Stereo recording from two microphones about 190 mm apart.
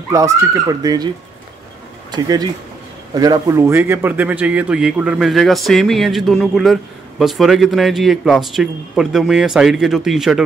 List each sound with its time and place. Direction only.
0.1 s speech: 15° right (ahead or behind)
2.0 s a man's voice: 20° right (ahead or behind); by 10.4 s centre (ahead or behind)